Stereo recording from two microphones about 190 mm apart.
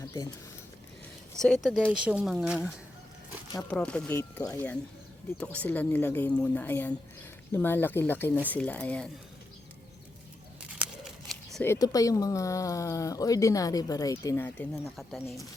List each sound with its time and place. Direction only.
1.4 s speech: 5° left (ahead or behind)
1.8 s speech: 5° right (ahead or behind)
3.7 s speech: 5° left (ahead or behind)
10.8 s a sound: centre (ahead or behind)
11.6 s speech: 15° left (ahead or behind); by 15.4 s centre (ahead or behind)